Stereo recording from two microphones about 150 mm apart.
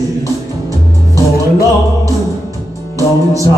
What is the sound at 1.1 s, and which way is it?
Music, 20° right (ahead or behind).